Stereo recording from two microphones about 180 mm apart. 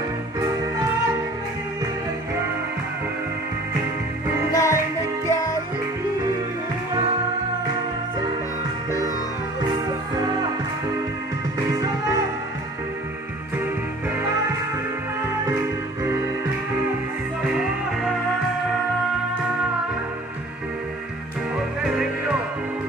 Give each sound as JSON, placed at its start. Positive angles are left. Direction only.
{"t": 4.5, "sound": "music", "side_deg": 15}
{"t": 15.4, "sound": "music", "side_deg": -15}